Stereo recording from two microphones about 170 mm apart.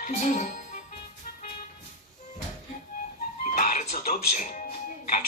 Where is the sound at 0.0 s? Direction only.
45° left (ahead or behind).